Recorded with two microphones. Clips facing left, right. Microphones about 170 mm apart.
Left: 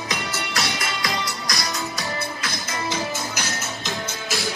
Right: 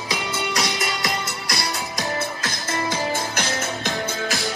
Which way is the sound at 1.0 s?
30° right (ahead or behind).